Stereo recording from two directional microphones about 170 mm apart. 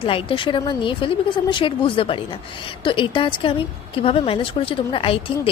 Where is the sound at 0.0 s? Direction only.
30° left (ahead or behind).